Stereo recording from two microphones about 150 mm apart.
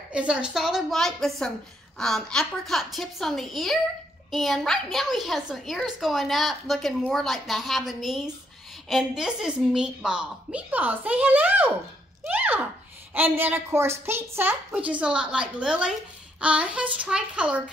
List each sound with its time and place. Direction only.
0.1 s a woman's voice: 5° right (ahead or behind)